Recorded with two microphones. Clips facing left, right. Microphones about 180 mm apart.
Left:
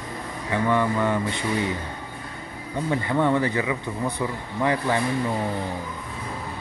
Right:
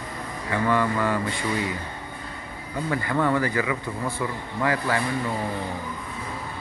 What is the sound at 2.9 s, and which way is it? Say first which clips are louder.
Speech: left 2 dB; 20° left (ahead or behind).